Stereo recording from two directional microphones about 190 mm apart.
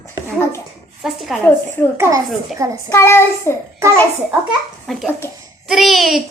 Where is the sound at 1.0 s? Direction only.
Centre (ahead or behind).